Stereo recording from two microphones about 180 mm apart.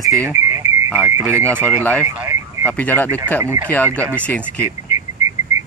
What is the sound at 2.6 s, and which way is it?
Speech, 10° left (ahead or behind).